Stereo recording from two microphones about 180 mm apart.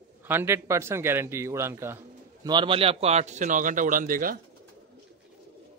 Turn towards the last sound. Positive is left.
turn(degrees=-50)  # may be behind; listen again after turning